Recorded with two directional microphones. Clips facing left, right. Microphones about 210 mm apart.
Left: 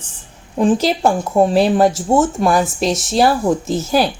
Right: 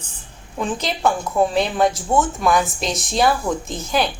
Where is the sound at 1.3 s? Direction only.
35° left (ahead or behind).